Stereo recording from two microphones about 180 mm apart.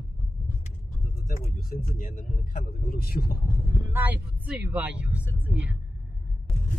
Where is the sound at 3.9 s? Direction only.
10° right (ahead or behind).